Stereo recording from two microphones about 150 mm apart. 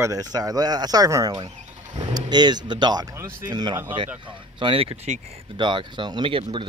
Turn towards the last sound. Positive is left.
turn(degrees=-35)  # may be behind; listen again after turning